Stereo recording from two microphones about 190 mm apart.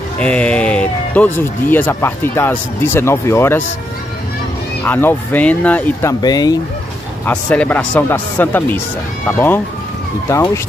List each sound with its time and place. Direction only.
0.2 s speech: 5° left (ahead or behind)
4.8 s speech: 10° left (ahead or behind)
6.2 s speech: 20° left (ahead or behind)
7.2 s speech: 5° left (ahead or behind)
10.2 s speech: 15° left (ahead or behind)